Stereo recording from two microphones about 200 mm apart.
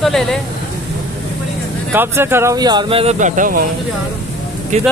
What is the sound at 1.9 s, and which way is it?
Speech, 10° right (ahead or behind).